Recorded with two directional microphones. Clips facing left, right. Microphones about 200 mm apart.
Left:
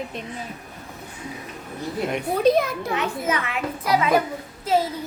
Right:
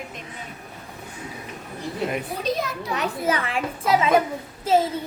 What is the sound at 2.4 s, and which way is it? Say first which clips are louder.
Speech: left 9 dB; 60° left (ahead or behind).